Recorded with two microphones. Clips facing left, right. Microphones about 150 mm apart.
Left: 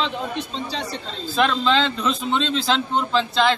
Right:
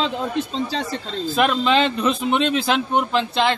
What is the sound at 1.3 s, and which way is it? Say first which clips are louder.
Speech: right 1 dB; 10° right (ahead or behind).